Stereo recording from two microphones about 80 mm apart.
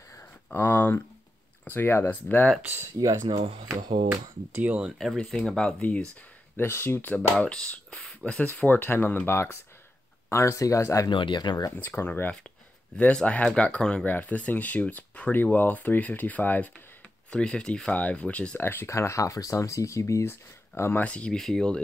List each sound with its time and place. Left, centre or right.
0.2 s a sound: left
1.7 s speech: left
2.6 s speech: right
4.1 s speech: right
4.9 s speech: centre
5.7 s speech: centre
6.5 s speech: left
7.2 s speech: centre
8.5 s speech: left
11.1 s speech: left
11.7 s speech: left
12.9 s speech: centre
18.6 s speech: left
21.0 s speech: centre